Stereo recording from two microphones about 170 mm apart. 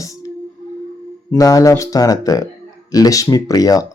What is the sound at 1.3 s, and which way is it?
Speech, 20° left (ahead or behind).